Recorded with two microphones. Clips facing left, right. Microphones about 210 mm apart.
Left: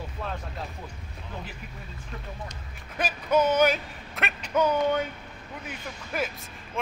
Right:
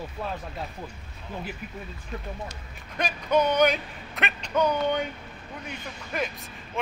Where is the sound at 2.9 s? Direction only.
5° left (ahead or behind).